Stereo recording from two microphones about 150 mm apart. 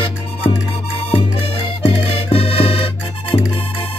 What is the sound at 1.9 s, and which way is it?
Music, 40° left (ahead or behind).